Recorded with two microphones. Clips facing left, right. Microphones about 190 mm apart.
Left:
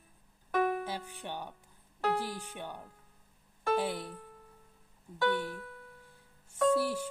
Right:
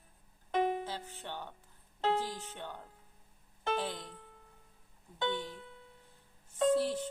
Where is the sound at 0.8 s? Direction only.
15° left (ahead or behind).